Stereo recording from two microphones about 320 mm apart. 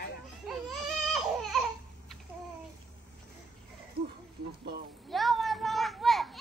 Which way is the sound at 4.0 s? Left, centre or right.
Right.